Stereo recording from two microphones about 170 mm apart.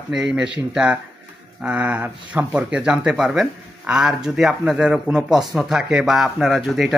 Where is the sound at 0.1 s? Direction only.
5° right (ahead or behind).